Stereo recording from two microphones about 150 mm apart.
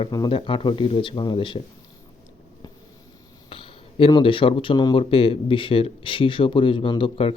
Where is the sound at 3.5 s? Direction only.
35° left (ahead or behind).